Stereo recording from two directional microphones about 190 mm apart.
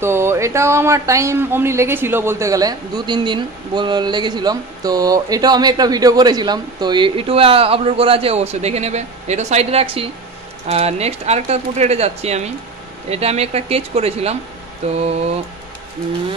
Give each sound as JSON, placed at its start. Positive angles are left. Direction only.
{"t": 0.0, "sound": "a man's voice", "side_deg": -15}